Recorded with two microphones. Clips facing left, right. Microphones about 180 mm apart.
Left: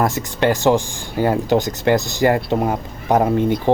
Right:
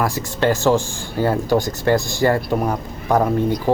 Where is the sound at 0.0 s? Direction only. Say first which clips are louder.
Left 1 dB; 20° left (ahead or behind).